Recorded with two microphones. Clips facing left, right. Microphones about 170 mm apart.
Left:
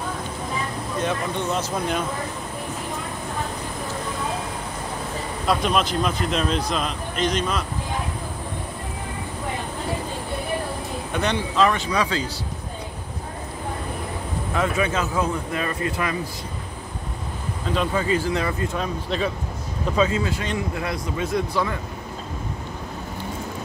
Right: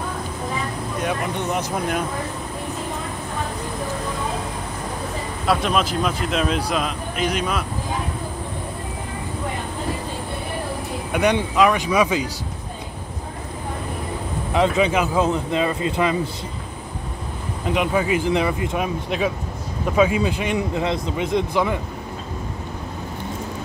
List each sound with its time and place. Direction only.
1.0 s speech: 15° right (ahead or behind)
5.5 s speech: centre (ahead or behind)
11.1 s speech: 15° right (ahead or behind)
14.5 s speech: 20° right (ahead or behind)
17.6 s speech: 15° right (ahead or behind)